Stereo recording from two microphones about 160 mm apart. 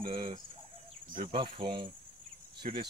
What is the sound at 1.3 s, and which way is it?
Cricket, 30° right (ahead or behind).